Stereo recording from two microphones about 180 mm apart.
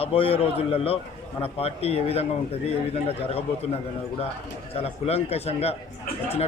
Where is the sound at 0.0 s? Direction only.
30° left (ahead or behind).